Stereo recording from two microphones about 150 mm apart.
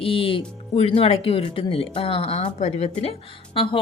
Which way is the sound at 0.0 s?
35° left (ahead or behind).